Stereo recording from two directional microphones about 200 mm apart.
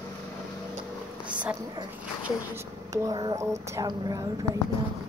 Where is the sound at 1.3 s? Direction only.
5° right (ahead or behind).